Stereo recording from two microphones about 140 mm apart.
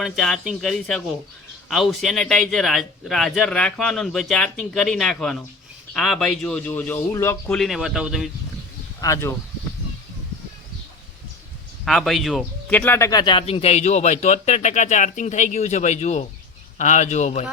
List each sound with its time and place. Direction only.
0.0 s a man's voice: centre (ahead or behind); by 7.5 s 20° left (ahead or behind)
7.5 s a man's voice: centre (ahead or behind)
9.0 s speech: 20° left (ahead or behind)
11.9 s speech: centre (ahead or behind); by 13.4 s 30° left (ahead or behind)
13.4 s speech: 45° left (ahead or behind)